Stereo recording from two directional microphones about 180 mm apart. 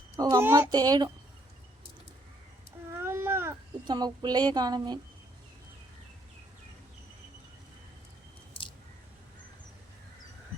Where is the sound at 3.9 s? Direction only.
20° right (ahead or behind).